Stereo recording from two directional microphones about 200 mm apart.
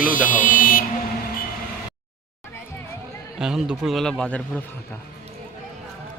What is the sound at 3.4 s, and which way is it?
Speech, 5° right (ahead or behind).